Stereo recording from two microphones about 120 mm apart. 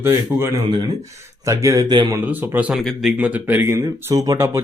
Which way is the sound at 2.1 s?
15° right (ahead or behind).